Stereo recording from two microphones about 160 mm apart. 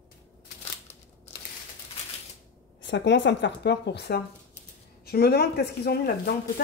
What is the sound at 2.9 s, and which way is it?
Speech, 90° left.